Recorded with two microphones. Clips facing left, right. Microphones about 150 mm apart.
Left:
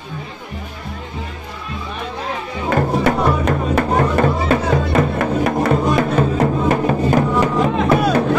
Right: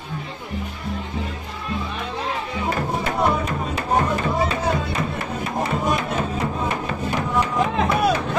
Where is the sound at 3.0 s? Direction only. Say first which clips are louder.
Left 5 dB; 65° left (ahead or behind).